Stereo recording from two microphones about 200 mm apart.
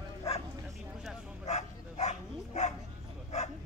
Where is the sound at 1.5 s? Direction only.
35° left (ahead or behind).